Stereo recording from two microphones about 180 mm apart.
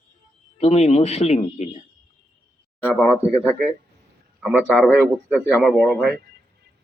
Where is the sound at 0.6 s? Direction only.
35° left (ahead or behind).